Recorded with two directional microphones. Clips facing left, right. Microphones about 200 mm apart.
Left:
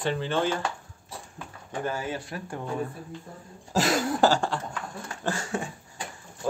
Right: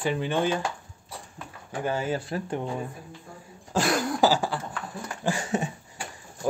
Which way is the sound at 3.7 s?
5° left (ahead or behind).